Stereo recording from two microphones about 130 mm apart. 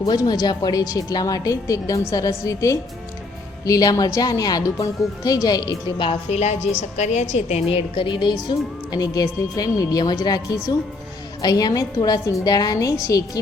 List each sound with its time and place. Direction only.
0.0 s a woman's voice: 30° left (ahead or behind)
6.1 s a woman's voice: 55° left (ahead or behind); by 13.4 s 25° left (ahead or behind)